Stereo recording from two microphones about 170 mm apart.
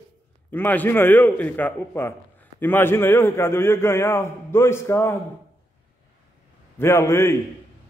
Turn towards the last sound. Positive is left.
turn(degrees=15)  # may be behind; listen again after turning